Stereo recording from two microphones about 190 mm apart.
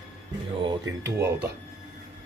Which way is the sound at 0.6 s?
20° right (ahead or behind).